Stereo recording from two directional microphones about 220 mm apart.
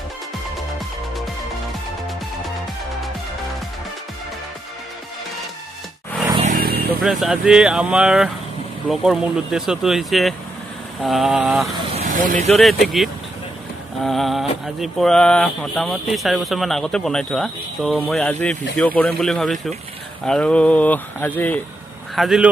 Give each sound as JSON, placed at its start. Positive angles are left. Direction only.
{"t": 6.4, "sound": "vehicle", "side_deg": -40}
{"t": 7.0, "sound": "speech", "side_deg": 0}
{"t": 11.7, "sound": "speech", "side_deg": -30}
{"t": 12.8, "sound": "speech", "side_deg": 0}